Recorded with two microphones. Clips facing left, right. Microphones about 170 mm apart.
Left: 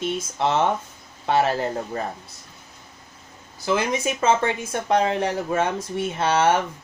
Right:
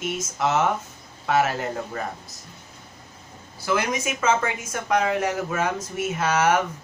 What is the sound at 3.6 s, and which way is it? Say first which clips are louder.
Speech: left 2 dB; 25° left (ahead or behind).